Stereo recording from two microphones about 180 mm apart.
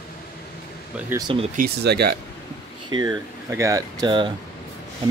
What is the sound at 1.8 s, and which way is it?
Speech, 65° right (ahead or behind).